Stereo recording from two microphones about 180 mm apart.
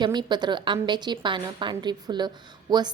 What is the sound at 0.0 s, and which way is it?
A woman's voice, 25° right (ahead or behind).